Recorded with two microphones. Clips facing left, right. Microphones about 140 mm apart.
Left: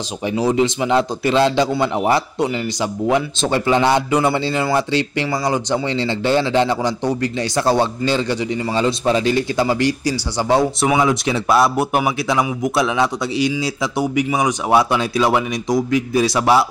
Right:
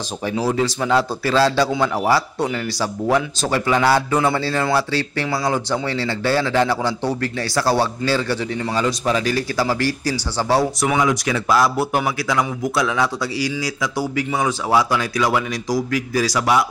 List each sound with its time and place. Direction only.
0.5 s speech: 20° left (ahead or behind)